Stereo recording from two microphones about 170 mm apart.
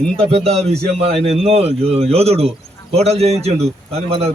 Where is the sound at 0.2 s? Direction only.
35° right (ahead or behind).